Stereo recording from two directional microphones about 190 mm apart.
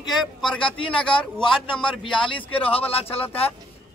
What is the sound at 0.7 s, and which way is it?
Speech, 25° left (ahead or behind).